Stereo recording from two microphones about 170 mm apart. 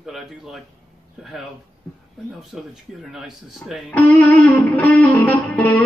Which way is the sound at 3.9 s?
10° left (ahead or behind).